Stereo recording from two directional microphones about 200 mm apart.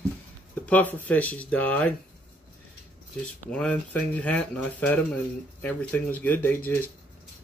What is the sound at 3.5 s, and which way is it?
Speech, 5° left (ahead or behind).